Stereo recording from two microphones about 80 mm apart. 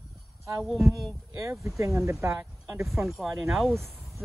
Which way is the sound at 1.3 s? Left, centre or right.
Right.